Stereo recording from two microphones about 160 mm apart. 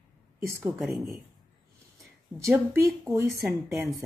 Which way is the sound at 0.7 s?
Centre (ahead or behind).